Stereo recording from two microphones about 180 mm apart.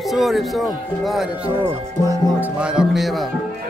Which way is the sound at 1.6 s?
15° right (ahead or behind).